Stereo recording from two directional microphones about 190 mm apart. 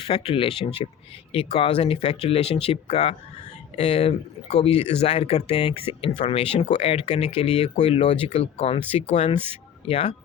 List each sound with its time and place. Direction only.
0.1 s speech: 30° left (ahead or behind)